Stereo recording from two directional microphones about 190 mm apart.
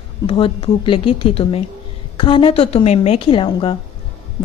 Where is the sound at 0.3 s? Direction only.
30° left (ahead or behind).